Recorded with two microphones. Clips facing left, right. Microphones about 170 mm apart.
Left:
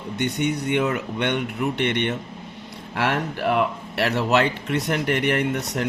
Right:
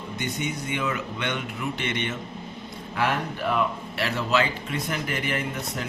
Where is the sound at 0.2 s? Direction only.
65° left (ahead or behind).